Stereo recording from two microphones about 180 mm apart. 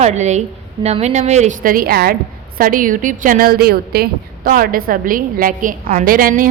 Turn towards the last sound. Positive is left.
turn(degrees=-50)  # may be behind; listen again after turning